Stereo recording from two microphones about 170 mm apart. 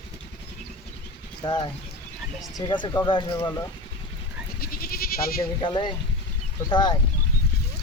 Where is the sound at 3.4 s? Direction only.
15° left (ahead or behind).